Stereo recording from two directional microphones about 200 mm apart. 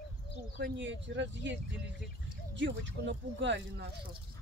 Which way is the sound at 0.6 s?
65° right (ahead or behind).